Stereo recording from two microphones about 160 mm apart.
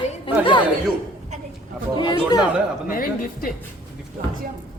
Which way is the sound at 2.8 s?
60° left (ahead or behind).